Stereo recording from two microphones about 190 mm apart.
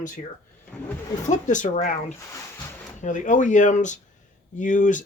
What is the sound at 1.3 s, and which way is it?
Speech, 40° left (ahead or behind).